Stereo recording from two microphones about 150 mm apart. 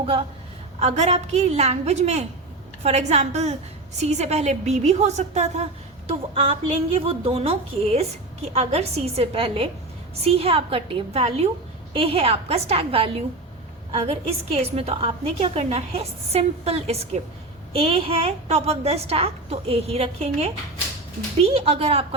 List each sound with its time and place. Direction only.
0.0 s a woman's voice: 40° right (ahead or behind)